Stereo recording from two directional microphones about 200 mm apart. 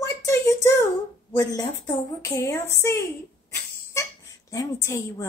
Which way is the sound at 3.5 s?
15° left (ahead or behind).